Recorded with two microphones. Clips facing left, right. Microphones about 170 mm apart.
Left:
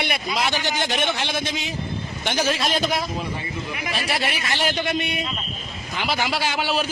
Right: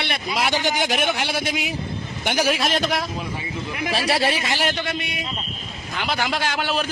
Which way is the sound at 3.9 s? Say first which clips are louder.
Right 6 dB; 35° right (ahead or behind).